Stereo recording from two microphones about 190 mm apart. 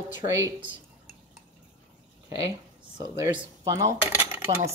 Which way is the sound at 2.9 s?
20° right (ahead or behind).